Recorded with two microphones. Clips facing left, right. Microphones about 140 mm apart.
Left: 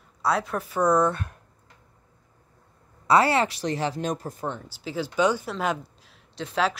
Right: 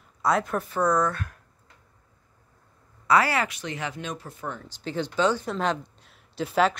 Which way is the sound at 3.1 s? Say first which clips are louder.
Left 2 dB; 25° left (ahead or behind).